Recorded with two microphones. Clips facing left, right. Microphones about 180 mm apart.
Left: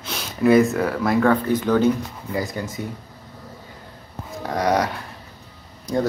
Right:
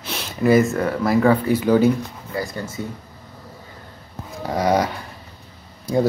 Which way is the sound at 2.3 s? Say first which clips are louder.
Left 2 dB; 15° left (ahead or behind).